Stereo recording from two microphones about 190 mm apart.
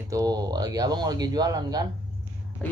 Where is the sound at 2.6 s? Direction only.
5° left (ahead or behind).